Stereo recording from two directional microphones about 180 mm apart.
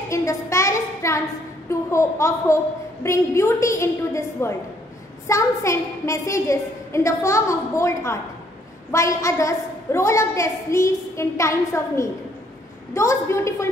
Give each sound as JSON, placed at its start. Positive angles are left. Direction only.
{"t": 0.1, "sound": "a woman's voice", "side_deg": 15}